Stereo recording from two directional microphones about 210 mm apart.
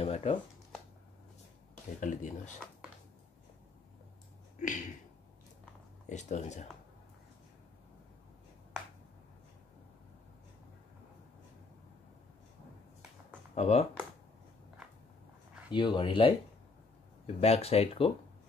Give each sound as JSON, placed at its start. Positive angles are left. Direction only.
{"t": 0.0, "sound": "a sound", "side_deg": 30}
{"t": 2.0, "sound": "speech", "side_deg": 35}
{"t": 4.6, "sound": "a sound", "side_deg": 35}
{"t": 6.0, "sound": "speech", "side_deg": 35}
{"t": 13.6, "sound": "speech", "side_deg": 30}
{"t": 15.7, "sound": "speech", "side_deg": 25}
{"t": 17.4, "sound": "speech", "side_deg": 30}